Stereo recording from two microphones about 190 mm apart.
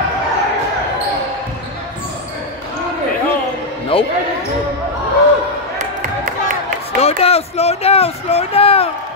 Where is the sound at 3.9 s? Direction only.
30° left (ahead or behind).